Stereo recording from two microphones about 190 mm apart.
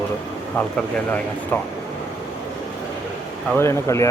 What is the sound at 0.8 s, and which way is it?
Speech, 5° left (ahead or behind).